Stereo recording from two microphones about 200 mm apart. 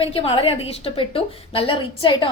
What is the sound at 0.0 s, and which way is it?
A woman's voice, 25° left (ahead or behind).